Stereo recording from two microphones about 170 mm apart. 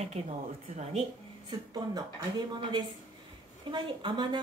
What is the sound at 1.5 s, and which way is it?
A woman's voice, 25° right (ahead or behind).